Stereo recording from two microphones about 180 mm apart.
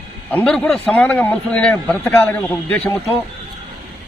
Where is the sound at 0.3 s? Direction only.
5° left (ahead or behind).